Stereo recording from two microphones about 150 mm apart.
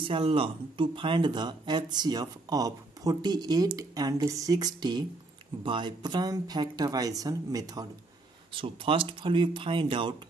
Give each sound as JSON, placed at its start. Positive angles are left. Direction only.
{"t": 0.0, "sound": "speech", "side_deg": -40}
{"t": 8.5, "sound": "speech", "side_deg": -35}